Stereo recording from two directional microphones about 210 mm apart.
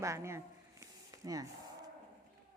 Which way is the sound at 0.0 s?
15° right (ahead or behind).